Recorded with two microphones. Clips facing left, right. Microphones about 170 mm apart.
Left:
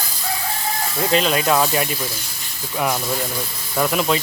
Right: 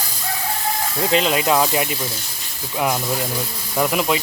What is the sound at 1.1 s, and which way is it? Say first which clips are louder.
Speech: even; 20° right (ahead or behind).